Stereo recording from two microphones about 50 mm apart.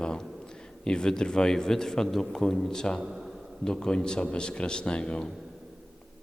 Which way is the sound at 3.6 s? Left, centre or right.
Centre.